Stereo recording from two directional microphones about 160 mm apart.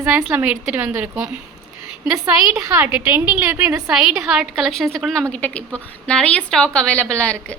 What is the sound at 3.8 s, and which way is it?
A woman's voice, 5° right (ahead or behind).